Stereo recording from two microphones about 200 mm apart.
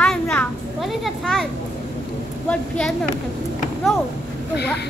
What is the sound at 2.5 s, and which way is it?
Speech, 5° left (ahead or behind).